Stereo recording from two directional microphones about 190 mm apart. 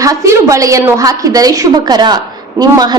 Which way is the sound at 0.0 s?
15° right (ahead or behind).